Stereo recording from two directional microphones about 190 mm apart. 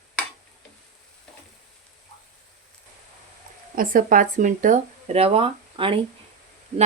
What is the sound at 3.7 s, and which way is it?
Speech, 45° right (ahead or behind).